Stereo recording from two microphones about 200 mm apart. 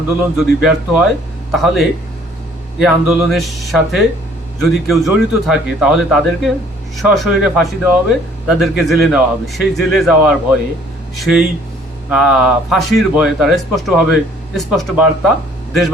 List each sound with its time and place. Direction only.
0.3 s speech: centre (ahead or behind)